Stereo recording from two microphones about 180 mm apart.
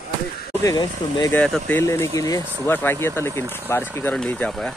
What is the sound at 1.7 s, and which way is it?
Speech, 15° left (ahead or behind).